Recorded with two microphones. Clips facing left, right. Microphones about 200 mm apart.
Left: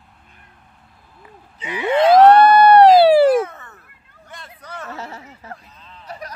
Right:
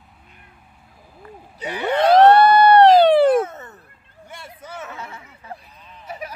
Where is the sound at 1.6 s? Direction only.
40° right (ahead or behind).